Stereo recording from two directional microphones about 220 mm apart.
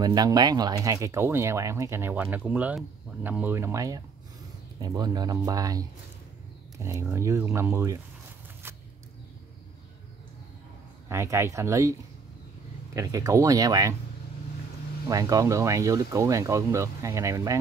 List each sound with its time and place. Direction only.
0.0 s speech: 20° right (ahead or behind)
11.1 s speech: 15° right (ahead or behind)
12.9 s speech: 15° right (ahead or behind)
15.0 s speech: 15° right (ahead or behind)